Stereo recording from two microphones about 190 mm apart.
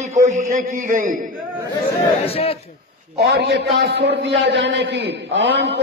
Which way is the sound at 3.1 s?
55° right (ahead or behind).